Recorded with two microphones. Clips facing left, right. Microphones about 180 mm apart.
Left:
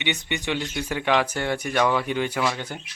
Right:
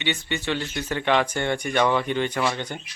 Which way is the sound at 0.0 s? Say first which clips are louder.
Even; 15° left (ahead or behind).